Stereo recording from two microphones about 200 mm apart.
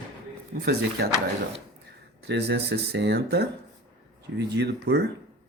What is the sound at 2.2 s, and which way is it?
Speech, 55° right (ahead or behind).